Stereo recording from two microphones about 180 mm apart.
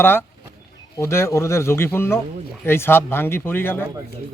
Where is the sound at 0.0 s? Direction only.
10° left (ahead or behind).